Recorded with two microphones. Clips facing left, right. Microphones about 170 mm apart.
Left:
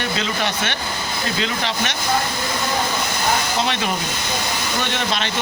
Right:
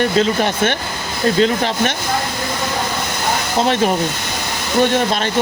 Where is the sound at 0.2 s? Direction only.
45° right (ahead or behind).